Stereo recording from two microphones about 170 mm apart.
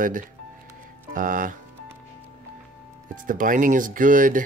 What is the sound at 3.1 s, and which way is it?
Speech, 50° right (ahead or behind).